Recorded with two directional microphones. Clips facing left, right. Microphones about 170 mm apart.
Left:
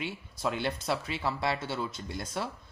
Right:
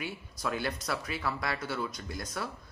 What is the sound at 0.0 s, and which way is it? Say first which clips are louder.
Speech: left 3 dB; 25° left (ahead or behind).